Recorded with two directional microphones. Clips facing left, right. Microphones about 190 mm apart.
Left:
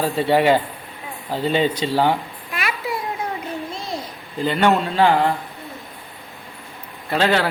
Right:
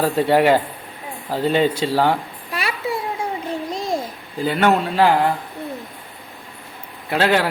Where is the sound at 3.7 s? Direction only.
45° right (ahead or behind).